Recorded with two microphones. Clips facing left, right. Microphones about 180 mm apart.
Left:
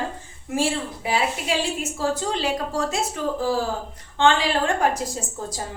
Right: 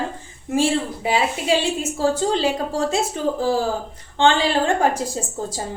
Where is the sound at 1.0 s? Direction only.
25° right (ahead or behind).